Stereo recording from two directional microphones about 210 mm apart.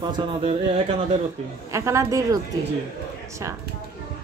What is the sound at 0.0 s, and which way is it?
A man's voice, 25° right (ahead or behind).